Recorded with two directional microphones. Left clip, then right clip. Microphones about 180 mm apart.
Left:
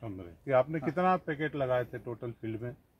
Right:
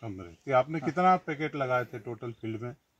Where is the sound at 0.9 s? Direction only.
15° left (ahead or behind).